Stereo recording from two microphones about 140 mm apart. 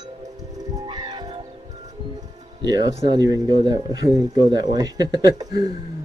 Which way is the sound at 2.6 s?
30° right (ahead or behind).